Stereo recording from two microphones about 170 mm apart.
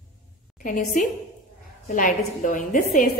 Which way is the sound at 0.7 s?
50° left (ahead or behind).